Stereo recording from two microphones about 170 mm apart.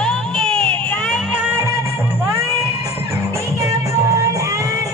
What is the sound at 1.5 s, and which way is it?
Music, 15° right (ahead or behind).